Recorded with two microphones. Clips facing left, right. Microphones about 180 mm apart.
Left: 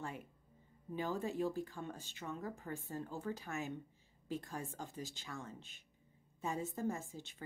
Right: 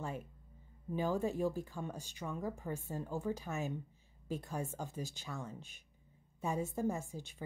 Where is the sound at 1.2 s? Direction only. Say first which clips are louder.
Right 3 dB; 15° right (ahead or behind).